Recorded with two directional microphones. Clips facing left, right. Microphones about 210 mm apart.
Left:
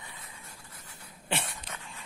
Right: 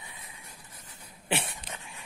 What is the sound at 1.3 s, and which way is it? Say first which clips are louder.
Dog: right 3 dB; 15° right (ahead or behind).